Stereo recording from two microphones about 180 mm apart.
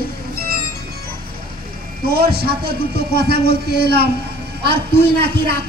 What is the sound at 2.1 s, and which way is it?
Speech, 60° right (ahead or behind).